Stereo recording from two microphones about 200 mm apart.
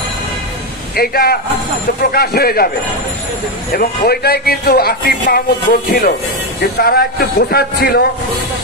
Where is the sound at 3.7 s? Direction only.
50° left (ahead or behind).